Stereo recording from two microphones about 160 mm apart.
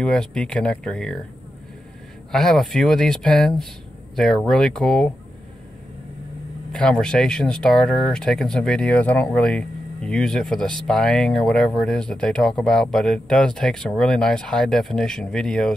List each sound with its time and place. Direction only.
0.0 s speech: 5° left (ahead or behind)
2.3 s speech: centre (ahead or behind)
6.7 s speech: 5° left (ahead or behind)